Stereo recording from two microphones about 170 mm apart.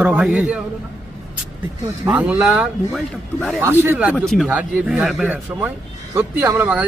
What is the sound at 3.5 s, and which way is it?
Speech, 10° right (ahead or behind).